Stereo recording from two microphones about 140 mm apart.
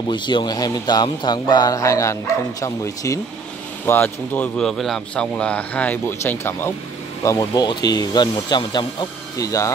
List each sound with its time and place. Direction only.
0.1 s speech: 35° left (ahead or behind); by 6.3 s 15° left (ahead or behind)
7.3 s speech: 30° left (ahead or behind)